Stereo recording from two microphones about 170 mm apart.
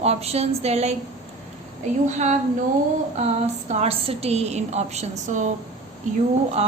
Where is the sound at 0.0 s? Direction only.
40° right (ahead or behind).